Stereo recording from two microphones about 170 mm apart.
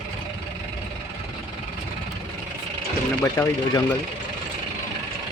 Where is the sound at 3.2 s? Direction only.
20° left (ahead or behind).